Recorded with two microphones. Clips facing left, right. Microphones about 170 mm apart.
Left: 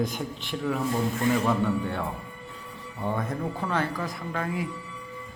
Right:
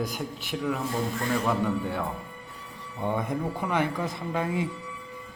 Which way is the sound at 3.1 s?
15° right (ahead or behind).